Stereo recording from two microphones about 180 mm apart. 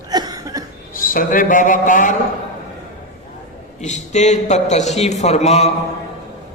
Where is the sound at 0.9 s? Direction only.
50° left (ahead or behind).